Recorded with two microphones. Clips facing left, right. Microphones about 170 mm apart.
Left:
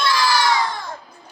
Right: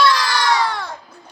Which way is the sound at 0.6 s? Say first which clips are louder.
Right 3 dB; 70° right (ahead or behind).